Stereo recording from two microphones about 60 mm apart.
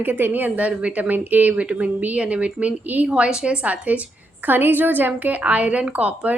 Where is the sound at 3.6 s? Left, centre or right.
Right.